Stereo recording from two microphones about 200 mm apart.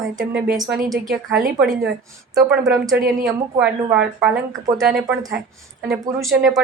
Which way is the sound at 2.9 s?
50° right (ahead or behind).